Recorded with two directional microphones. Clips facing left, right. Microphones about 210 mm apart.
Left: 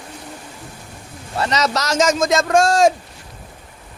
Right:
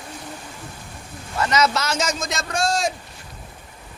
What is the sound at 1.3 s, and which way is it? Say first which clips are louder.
Speech: left 1 dB; 35° left (ahead or behind).